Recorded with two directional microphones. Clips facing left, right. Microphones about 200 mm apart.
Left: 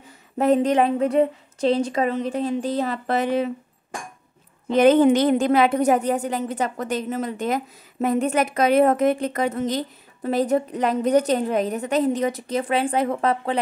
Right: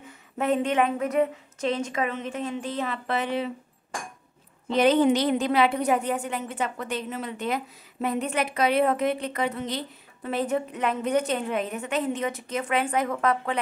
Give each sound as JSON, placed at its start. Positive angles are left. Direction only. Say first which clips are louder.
{"t": 0.4, "sound": "a woman's voice", "louder": "left 5 dB", "side_deg": 35}
{"t": 4.6, "sound": "a woman's voice", "louder": "left 5 dB", "side_deg": 50}